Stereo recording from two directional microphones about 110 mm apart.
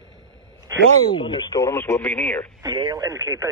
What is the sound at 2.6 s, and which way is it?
Speech, 40° right (ahead or behind).